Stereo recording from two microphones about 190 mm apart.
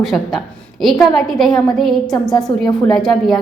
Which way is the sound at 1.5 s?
20° left (ahead or behind).